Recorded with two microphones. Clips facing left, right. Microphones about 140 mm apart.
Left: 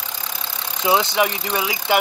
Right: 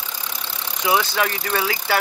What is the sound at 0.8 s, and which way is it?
Speech, 20° left (ahead or behind).